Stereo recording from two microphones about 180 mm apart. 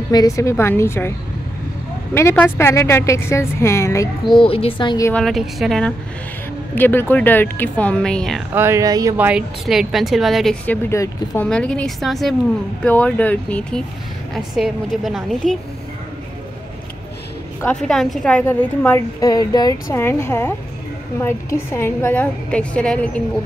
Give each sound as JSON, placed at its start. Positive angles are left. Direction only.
{"t": 0.1, "sound": "a woman's voice", "side_deg": 20}
{"t": 2.1, "sound": "a woman's voice", "side_deg": 15}
{"t": 4.4, "sound": "a woman's voice", "side_deg": 30}
{"t": 5.1, "sound": "a woman's voice", "side_deg": 0}
{"t": 8.5, "sound": "speech", "side_deg": -15}
{"t": 9.1, "sound": "a woman's voice", "side_deg": -5}
{"t": 10.9, "sound": "a woman's voice", "side_deg": 15}
{"t": 11.4, "sound": "a woman's voice", "side_deg": 5}
{"t": 17.6, "sound": "a woman's voice", "side_deg": 5}